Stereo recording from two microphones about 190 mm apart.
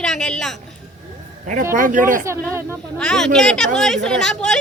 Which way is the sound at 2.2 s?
15° right (ahead or behind).